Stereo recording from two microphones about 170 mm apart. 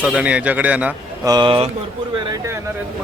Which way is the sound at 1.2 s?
25° right (ahead or behind).